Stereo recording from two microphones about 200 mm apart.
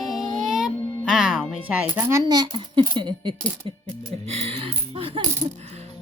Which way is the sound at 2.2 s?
20° right (ahead or behind).